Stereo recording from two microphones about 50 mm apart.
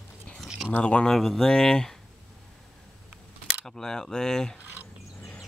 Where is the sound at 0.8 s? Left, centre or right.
Centre.